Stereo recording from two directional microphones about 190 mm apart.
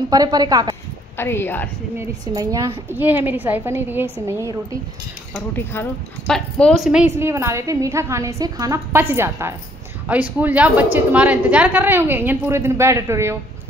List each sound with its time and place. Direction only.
0.1 s a woman's voice: 20° right (ahead or behind)
1.1 s speech: 10° left (ahead or behind)
2.0 s speech: 15° right (ahead or behind)
5.3 s speech: 10° left (ahead or behind); by 13.4 s 15° right (ahead or behind)